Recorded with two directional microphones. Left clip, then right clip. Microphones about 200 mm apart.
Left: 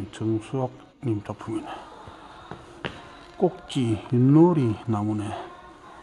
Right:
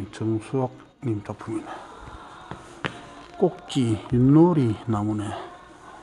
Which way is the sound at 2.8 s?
60° right (ahead or behind).